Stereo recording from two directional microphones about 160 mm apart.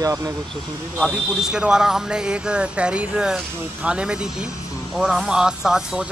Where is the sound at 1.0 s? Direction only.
5° right (ahead or behind).